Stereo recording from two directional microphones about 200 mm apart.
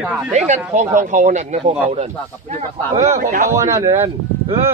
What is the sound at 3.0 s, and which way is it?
Speech, 40° right (ahead or behind).